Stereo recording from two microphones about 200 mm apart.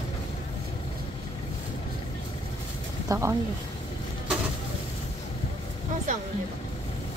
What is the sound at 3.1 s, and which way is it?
Speech, 15° right (ahead or behind).